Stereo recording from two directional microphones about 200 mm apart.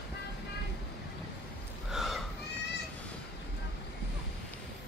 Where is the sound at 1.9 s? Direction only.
Centre (ahead or behind).